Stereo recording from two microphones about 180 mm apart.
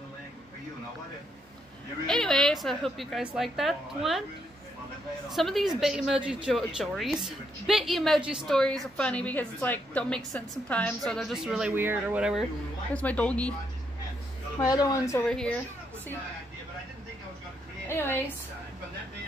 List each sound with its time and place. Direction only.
2.0 s a woman's voice: 5° left (ahead or behind)
5.3 s a woman's voice: centre (ahead or behind)
12.9 s speech: 10° left (ahead or behind)
14.6 s a woman's voice: 20° left (ahead or behind)
15.2 s a woman's voice: 5° left (ahead or behind)
17.8 s a woman's voice: 10° left (ahead or behind)